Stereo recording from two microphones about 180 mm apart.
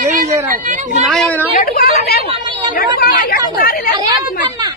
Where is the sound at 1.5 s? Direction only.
55° left (ahead or behind).